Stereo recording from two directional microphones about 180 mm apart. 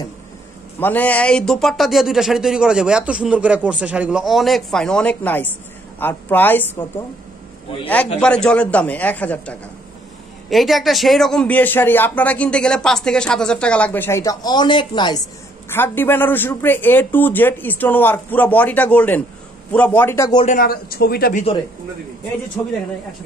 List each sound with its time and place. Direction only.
0.7 s a man's voice: 10° left (ahead or behind)
15.7 s speech: 10° left (ahead or behind)
20.4 s speech: 50° left (ahead or behind)